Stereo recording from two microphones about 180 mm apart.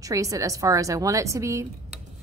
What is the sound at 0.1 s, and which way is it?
A woman's voice, 20° right (ahead or behind).